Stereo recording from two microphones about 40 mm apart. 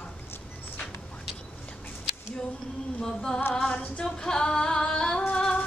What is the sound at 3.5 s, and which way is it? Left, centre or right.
Singing, left.